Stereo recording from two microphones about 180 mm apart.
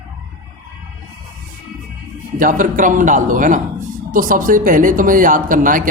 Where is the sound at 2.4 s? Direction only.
45° right (ahead or behind).